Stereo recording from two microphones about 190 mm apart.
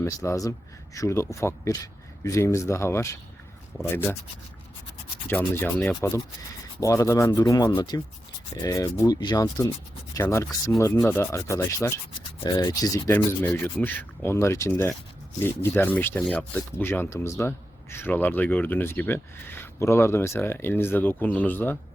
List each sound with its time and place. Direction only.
0.0 s speech: 15° left (ahead or behind)
5.3 s speech: 10° left (ahead or behind)
8.6 s rub: 20° left (ahead or behind)
10.2 s speech: 15° left (ahead or behind)